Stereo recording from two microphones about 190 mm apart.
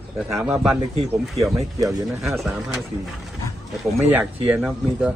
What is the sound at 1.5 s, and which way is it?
Speech, 20° right (ahead or behind).